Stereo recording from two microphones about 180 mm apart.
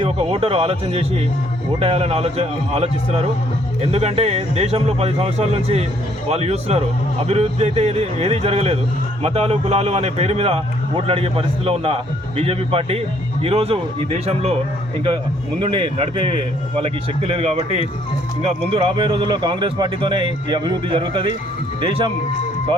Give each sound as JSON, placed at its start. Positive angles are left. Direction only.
{"t": 0.0, "sound": "a man's voice", "side_deg": -30}